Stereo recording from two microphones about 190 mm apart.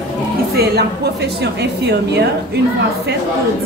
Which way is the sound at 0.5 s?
60° right (ahead or behind).